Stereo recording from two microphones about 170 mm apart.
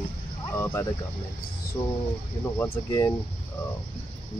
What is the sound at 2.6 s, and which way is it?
Speech, 15° left (ahead or behind).